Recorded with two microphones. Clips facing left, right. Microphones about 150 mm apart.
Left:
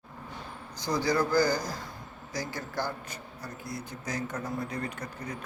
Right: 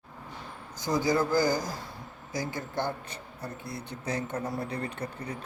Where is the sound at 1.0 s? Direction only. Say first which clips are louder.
Right 1 dB; 20° right (ahead or behind).